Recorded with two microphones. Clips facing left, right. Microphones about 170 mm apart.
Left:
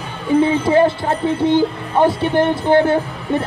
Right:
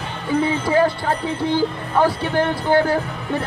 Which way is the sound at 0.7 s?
25° left (ahead or behind).